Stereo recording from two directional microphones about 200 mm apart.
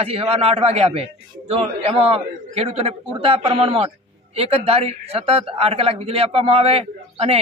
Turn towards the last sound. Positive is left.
turn(degrees=-30)  # may be behind; listen again after turning